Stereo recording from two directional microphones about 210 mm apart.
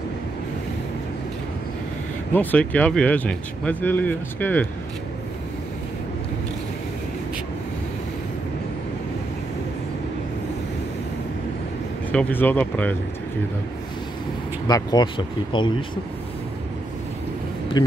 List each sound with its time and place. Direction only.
2.3 s speech: 5° left (ahead or behind)
12.1 s speech: 5° left (ahead or behind)
14.7 s speech: 20° left (ahead or behind)
17.8 s speech: 20° left (ahead or behind)